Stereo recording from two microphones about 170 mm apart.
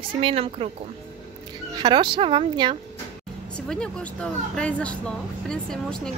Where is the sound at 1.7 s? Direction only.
25° right (ahead or behind).